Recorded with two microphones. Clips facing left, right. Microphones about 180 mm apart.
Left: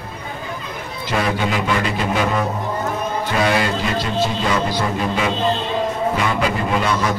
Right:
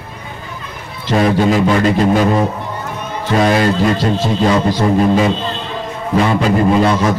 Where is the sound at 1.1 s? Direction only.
40° right (ahead or behind).